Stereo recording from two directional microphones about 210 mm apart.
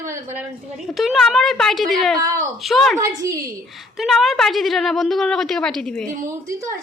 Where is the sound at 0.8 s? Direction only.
Centre (ahead or behind).